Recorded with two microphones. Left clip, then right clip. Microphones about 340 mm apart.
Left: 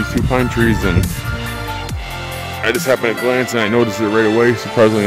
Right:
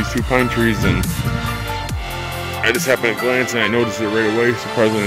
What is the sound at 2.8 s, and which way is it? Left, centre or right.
Speech, centre.